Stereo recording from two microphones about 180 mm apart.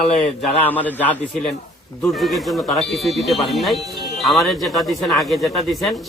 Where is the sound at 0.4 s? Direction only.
10° left (ahead or behind).